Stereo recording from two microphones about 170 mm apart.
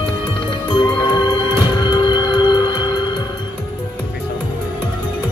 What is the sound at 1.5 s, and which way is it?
Music, 25° left (ahead or behind).